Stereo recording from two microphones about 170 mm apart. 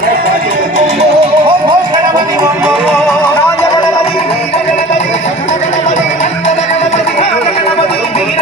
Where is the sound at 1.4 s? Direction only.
25° right (ahead or behind).